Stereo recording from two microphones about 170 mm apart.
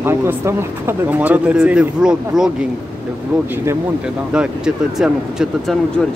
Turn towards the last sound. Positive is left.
turn(degrees=-5)  # may be behind; listen again after turning